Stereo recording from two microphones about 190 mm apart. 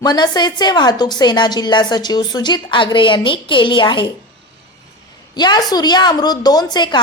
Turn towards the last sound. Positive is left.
turn(degrees=25)  # may be behind; listen again after turning